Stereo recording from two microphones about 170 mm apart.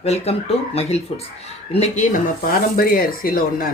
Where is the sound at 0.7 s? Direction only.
35° left (ahead or behind).